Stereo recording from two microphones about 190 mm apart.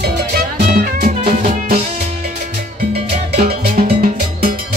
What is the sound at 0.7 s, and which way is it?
Music, 40° right (ahead or behind).